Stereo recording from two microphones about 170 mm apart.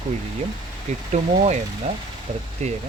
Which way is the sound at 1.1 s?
40° right (ahead or behind).